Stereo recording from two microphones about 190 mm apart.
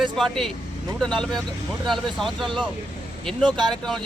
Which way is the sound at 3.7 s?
Centre (ahead or behind).